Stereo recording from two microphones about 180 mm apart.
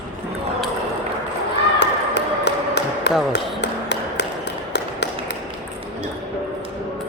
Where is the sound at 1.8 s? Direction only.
75° left (ahead or behind).